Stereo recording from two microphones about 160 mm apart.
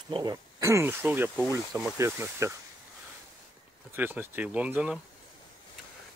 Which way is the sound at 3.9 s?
10° right (ahead or behind).